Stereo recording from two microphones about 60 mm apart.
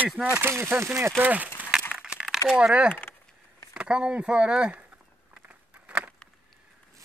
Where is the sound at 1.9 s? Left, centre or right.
Centre.